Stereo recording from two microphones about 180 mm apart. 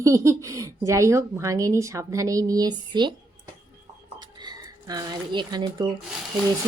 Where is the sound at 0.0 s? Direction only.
15° right (ahead or behind).